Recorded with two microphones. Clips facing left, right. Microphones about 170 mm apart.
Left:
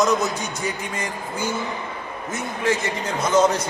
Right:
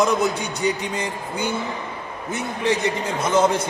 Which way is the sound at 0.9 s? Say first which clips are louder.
Right 2 dB; 30° right (ahead or behind).